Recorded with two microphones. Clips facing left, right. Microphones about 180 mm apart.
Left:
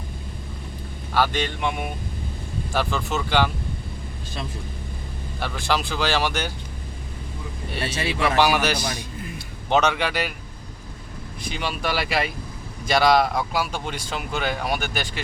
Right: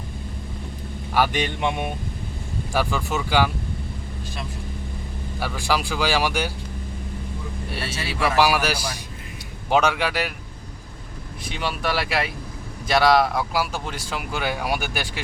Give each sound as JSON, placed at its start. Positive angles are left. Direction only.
{"t": 1.1, "sound": "speech", "side_deg": -15}
{"t": 2.7, "sound": "speech", "side_deg": -10}
{"t": 5.4, "sound": "speech", "side_deg": -10}
{"t": 7.7, "sound": "speech", "side_deg": -5}
{"t": 11.4, "sound": "speech", "side_deg": 0}